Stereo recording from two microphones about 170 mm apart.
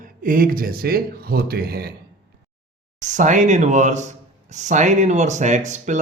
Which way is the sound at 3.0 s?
45° right (ahead or behind).